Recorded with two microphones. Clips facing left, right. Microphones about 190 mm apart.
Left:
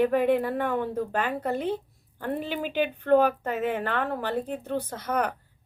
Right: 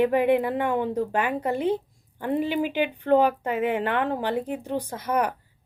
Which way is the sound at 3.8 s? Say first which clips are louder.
Right 3 dB; 15° right (ahead or behind).